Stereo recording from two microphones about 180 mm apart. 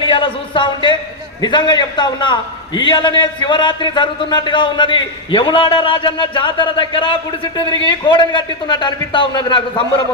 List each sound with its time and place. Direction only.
0.0 s a man's voice: 30° left (ahead or behind)